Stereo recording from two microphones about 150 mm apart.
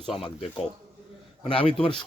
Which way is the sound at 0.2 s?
35° left (ahead or behind).